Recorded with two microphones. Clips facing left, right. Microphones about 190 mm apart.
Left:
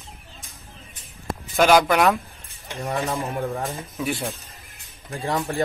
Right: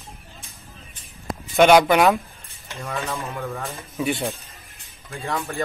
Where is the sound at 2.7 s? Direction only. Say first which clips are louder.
Left 3 dB; 15° left (ahead or behind).